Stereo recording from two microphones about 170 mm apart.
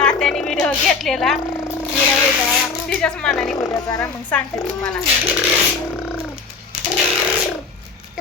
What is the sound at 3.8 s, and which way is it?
Speech, 20° left (ahead or behind).